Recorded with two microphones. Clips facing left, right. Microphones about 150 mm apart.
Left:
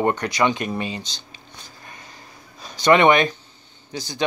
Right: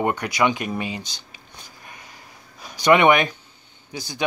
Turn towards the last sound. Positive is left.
turn(degrees=-10)  # may be behind; listen again after turning